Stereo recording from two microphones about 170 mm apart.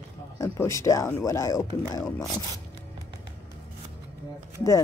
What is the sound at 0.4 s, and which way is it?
Speech, 15° left (ahead or behind).